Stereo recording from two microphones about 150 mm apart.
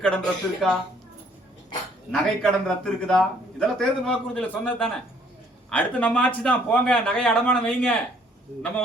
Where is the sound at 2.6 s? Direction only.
5° left (ahead or behind).